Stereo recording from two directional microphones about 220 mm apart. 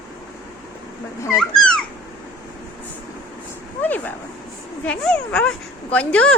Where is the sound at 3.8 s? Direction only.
5° left (ahead or behind).